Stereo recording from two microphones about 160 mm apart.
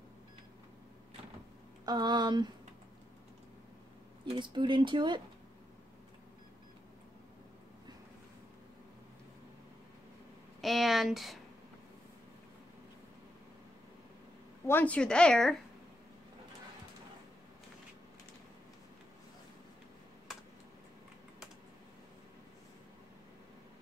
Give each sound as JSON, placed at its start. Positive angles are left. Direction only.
{"t": 1.9, "sound": "speech", "side_deg": -25}
{"t": 4.4, "sound": "speech", "side_deg": -30}
{"t": 10.6, "sound": "a sound", "side_deg": 0}
{"t": 14.7, "sound": "speech", "side_deg": 10}